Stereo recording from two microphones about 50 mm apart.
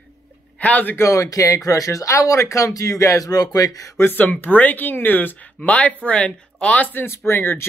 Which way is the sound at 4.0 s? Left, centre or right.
Left.